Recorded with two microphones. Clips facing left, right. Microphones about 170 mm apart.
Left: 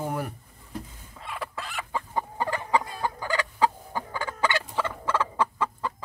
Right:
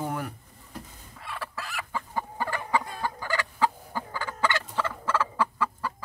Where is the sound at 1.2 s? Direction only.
20° left (ahead or behind).